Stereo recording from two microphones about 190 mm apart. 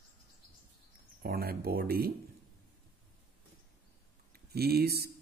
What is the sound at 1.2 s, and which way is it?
Speech, 55° right (ahead or behind).